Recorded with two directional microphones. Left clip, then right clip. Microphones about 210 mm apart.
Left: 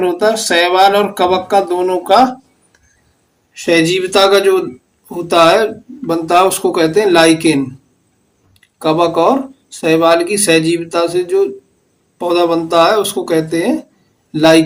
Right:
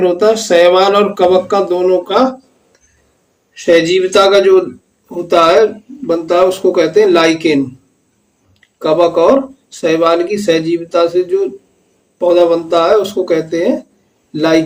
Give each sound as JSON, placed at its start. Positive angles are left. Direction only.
{"t": 0.0, "sound": "speech", "side_deg": 20}
{"t": 3.6, "sound": "speech", "side_deg": 35}
{"t": 8.8, "sound": "speech", "side_deg": 35}